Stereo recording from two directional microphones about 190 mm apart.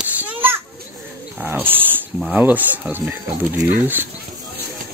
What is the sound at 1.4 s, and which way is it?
Speech, 10° right (ahead or behind).